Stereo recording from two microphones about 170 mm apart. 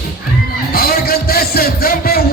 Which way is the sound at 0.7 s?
60° left (ahead or behind).